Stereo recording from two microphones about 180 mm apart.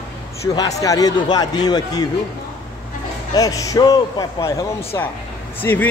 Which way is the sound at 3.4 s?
20° left (ahead or behind).